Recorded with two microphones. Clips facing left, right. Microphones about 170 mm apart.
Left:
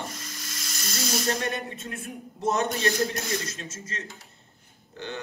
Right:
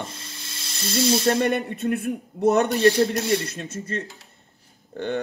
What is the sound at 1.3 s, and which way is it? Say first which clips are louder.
Speech: right 8 dB; 60° right (ahead or behind).